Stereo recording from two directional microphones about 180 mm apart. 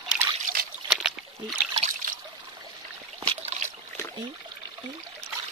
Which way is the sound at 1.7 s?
35° right (ahead or behind).